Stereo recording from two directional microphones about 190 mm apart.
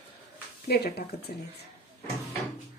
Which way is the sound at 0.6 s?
55° left (ahead or behind).